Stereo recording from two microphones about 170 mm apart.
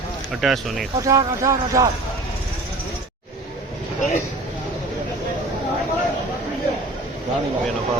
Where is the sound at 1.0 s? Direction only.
20° right (ahead or behind).